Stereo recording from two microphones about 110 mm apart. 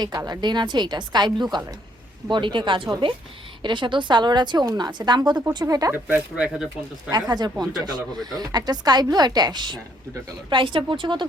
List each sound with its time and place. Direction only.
0.0 s a woman's voice: 40° right (ahead or behind)
5.9 s speech: 15° right (ahead or behind)
7.1 s a woman's voice: 40° right (ahead or behind)